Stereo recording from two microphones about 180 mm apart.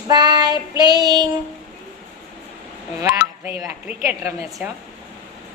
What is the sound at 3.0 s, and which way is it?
A woman's voice, 10° right (ahead or behind).